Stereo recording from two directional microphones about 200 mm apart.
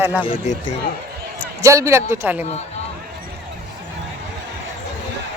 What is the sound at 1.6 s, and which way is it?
Speech, 15° right (ahead or behind).